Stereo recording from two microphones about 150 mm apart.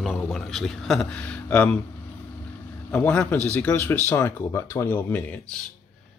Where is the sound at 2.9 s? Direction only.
10° left (ahead or behind).